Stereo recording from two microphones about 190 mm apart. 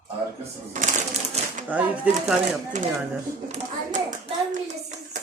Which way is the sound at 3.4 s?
40° right (ahead or behind).